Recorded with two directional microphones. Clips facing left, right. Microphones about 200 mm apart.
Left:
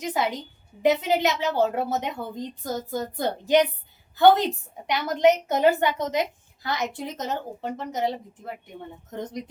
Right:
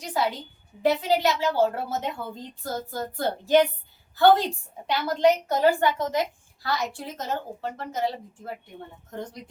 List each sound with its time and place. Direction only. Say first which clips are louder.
0.0 s a woman's voice: left 1 dB; 20° left (ahead or behind)